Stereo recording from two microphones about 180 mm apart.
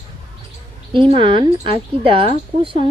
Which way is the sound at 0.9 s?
30° right (ahead or behind).